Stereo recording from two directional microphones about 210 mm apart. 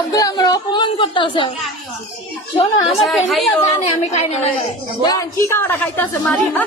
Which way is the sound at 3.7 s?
30° left (ahead or behind).